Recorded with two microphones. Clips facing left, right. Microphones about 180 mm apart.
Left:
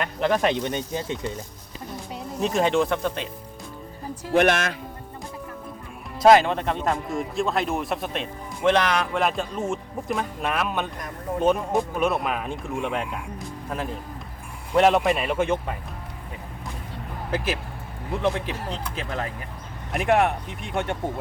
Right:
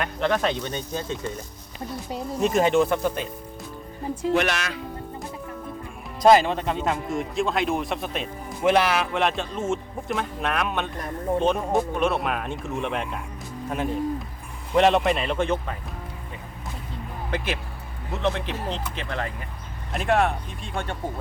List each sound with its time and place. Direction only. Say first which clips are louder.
0.2 s speech: left 2 dB; 10° left (ahead or behind)
2.4 s speech: right 2 dB; centre (ahead or behind)
4.1 s speech: left 3 dB; 50° left (ahead or behind)
6.2 s speech: left 1 dB; centre (ahead or behind)
14.7 s speech: even; 5° left (ahead or behind)
17.3 s speech: left 2 dB; 5° left (ahead or behind)
19.9 s speech: left 1 dB; 15° left (ahead or behind)